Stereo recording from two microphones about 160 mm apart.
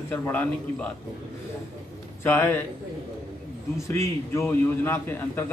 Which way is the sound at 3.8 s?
15° left (ahead or behind).